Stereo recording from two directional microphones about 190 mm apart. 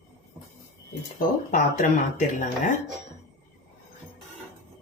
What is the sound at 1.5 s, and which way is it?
Speech, 45° left (ahead or behind).